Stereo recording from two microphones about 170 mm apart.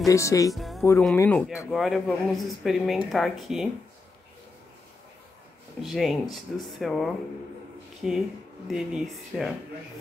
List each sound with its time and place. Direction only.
0.0 s speech: 20° left (ahead or behind)
0.6 s music: centre (ahead or behind)
1.1 s speech: 15° left (ahead or behind)
1.7 s speech: centre (ahead or behind)
5.8 s speech: centre (ahead or behind)